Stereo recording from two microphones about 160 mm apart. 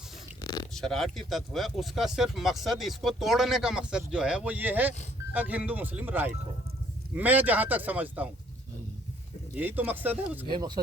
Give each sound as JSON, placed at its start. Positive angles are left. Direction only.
{"t": 0.4, "sound": "a sound", "side_deg": 25}
{"t": 0.7, "sound": "a man's voice", "side_deg": 0}
{"t": 9.6, "sound": "a man's voice", "side_deg": -10}